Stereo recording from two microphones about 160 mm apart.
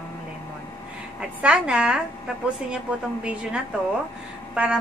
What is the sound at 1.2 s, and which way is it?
A woman's voice, 5° right (ahead or behind).